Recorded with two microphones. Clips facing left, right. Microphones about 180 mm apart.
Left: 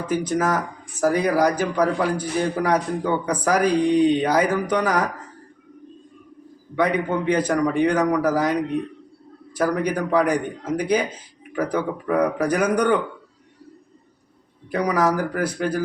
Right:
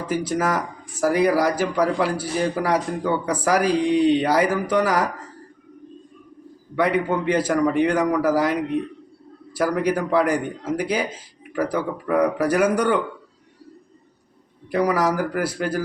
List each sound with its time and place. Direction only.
0.0 s a man's voice: 10° right (ahead or behind)
6.7 s a man's voice: 5° right (ahead or behind)
9.6 s a man's voice: 5° right (ahead or behind)
14.7 s a man's voice: 5° right (ahead or behind)